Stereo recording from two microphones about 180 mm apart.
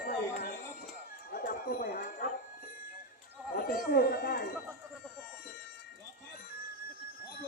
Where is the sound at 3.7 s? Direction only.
55° left (ahead or behind).